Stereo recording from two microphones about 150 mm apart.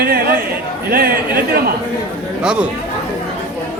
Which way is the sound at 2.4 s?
5° right (ahead or behind).